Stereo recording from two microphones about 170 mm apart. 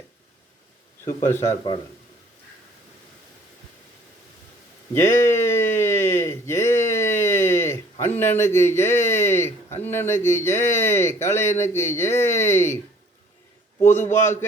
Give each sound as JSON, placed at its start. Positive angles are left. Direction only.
{"t": 1.2, "sound": "speech", "side_deg": 20}
{"t": 4.9, "sound": "a sound", "side_deg": 15}
{"t": 8.0, "sound": "a man's voice", "side_deg": 15}
{"t": 13.9, "sound": "a man's voice", "side_deg": 15}